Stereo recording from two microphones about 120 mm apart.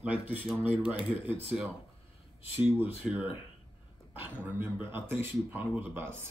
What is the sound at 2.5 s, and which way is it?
Speech, 15° right (ahead or behind).